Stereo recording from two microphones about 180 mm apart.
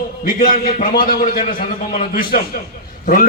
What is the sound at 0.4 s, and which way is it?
A man's voice, 50° left (ahead or behind).